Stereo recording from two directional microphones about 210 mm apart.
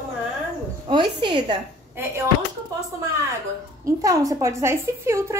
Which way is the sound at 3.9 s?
15° right (ahead or behind).